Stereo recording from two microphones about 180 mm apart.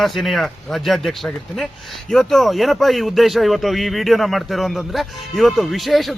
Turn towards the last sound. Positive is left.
turn(degrees=0)  # may be behind; listen again after turning